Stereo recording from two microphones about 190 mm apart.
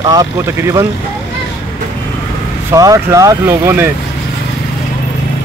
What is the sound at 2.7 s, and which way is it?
Speech, 15° right (ahead or behind).